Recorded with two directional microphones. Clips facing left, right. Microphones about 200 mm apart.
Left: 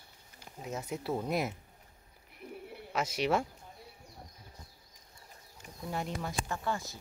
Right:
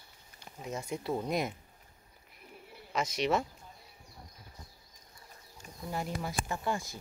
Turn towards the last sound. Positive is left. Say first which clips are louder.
# right 1 dB
turn(degrees=-10)  # may be behind; listen again after turning